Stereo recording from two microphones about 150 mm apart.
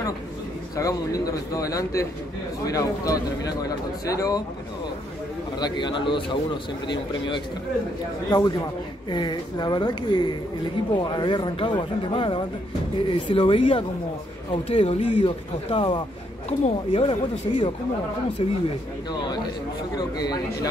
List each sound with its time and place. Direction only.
0.7 s speech: 25° left (ahead or behind)
5.6 s a man's voice: 30° left (ahead or behind)
20.0 s speech: 25° left (ahead or behind)